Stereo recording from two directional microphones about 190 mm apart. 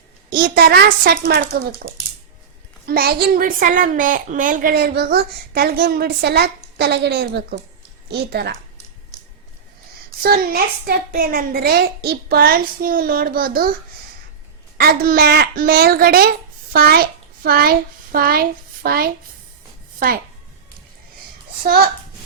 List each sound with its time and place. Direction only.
0.3 s a child's voice: 50° right (ahead or behind)
10.2 s a child's voice: 55° right (ahead or behind)
14.8 s a child's voice: 55° right (ahead or behind)